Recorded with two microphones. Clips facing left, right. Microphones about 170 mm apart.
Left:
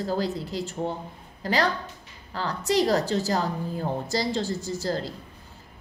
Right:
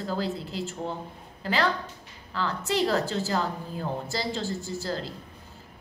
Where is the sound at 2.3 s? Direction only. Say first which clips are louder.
Left 2 dB; 40° left (ahead or behind).